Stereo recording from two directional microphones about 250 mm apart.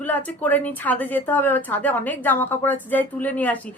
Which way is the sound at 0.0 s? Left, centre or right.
Centre.